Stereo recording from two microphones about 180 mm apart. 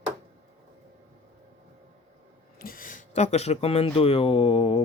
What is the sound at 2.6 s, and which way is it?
Speech, 50° left (ahead or behind).